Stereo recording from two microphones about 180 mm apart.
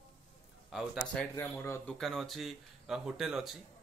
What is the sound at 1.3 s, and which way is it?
Speech, 15° left (ahead or behind).